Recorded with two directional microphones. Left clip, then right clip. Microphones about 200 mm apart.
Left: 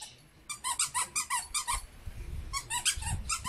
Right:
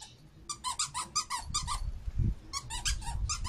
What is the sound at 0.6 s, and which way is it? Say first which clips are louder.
Squeak: left 2 dB; 45° right (ahead or behind).